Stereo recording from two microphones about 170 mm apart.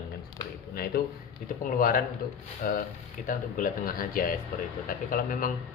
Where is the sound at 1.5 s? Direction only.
50° left (ahead or behind).